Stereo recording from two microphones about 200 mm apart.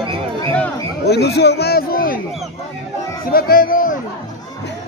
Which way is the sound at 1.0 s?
55° left (ahead or behind).